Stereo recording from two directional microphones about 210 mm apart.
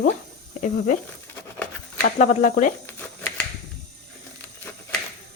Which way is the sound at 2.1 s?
35° left (ahead or behind).